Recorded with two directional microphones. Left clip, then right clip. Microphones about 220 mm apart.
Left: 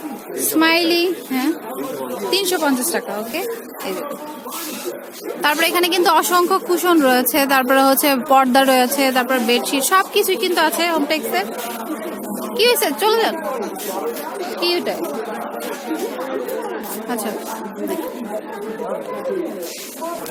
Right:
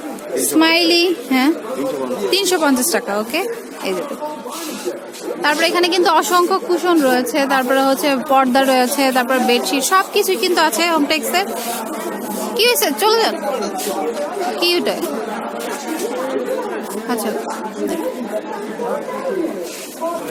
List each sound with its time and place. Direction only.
0.6 s a woman's voice: 10° right (ahead or behind)
5.4 s a woman's voice: 15° left (ahead or behind)
6.7 s speech: 15° left (ahead or behind)
9.0 s a woman's voice: centre (ahead or behind)
12.5 s a woman's voice: 5° right (ahead or behind)
14.6 s chatter: 10° right (ahead or behind)